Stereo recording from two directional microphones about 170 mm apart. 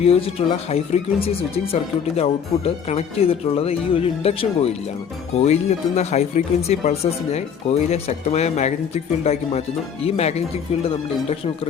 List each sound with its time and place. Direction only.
0.0 s speech: 35° left (ahead or behind)